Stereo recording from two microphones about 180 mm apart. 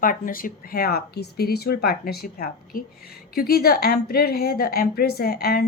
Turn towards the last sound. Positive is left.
turn(degrees=60)  # may be behind; listen again after turning